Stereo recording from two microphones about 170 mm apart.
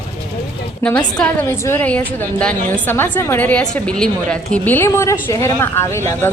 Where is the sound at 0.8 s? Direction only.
10° left (ahead or behind).